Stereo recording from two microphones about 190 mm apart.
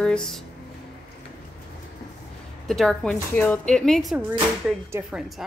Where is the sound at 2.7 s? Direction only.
Centre (ahead or behind).